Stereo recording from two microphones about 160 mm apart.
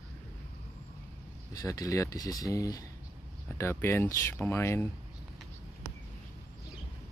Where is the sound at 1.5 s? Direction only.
20° left (ahead or behind).